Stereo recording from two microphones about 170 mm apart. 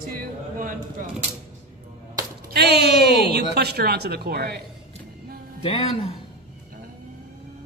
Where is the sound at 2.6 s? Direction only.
70° right (ahead or behind).